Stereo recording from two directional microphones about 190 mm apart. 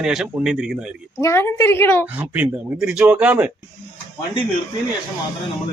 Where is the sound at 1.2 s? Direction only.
15° left (ahead or behind).